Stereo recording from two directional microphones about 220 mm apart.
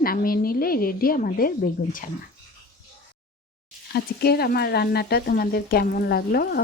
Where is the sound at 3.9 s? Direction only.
45° left (ahead or behind).